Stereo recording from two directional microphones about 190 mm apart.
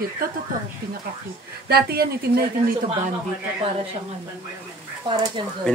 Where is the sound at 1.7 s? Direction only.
55° right (ahead or behind).